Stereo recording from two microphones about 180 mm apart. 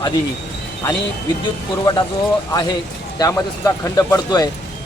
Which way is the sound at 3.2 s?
15° left (ahead or behind).